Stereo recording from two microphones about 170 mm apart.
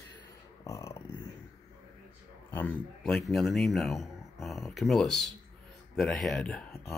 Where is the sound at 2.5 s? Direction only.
10° left (ahead or behind).